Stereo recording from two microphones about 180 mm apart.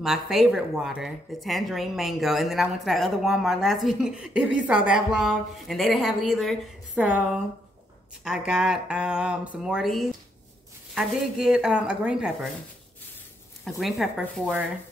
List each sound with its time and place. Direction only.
0.0 s speech: centre (ahead or behind)
13.7 s speech: centre (ahead or behind)